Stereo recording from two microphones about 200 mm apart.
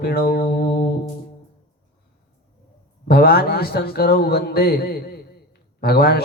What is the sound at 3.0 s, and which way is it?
A man's voice, 50° left (ahead or behind).